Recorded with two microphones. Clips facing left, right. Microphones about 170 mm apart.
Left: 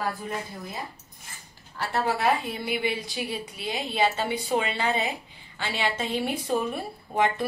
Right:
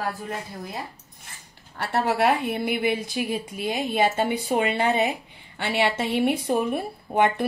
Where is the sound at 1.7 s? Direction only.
65° right (ahead or behind).